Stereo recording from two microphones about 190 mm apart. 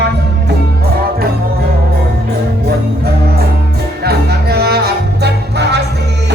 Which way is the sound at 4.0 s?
55° right (ahead or behind).